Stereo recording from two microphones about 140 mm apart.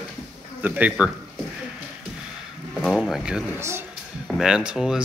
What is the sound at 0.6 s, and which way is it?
Speech, 10° right (ahead or behind).